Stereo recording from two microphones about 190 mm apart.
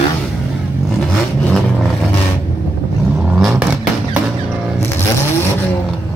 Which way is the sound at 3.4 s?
Centre (ahead or behind).